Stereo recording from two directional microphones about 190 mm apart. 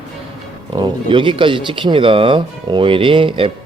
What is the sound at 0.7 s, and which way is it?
Speech, 25° right (ahead or behind).